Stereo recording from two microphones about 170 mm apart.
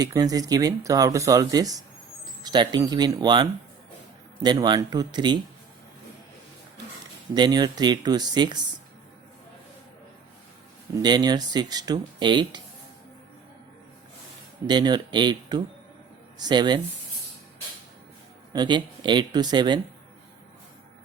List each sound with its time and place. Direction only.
0.0 s speech: 20° right (ahead or behind)
7.3 s speech: 25° right (ahead or behind)
11.0 s speech: 25° right (ahead or behind)
14.7 s speech: 25° right (ahead or behind)
18.5 s speech: 25° right (ahead or behind)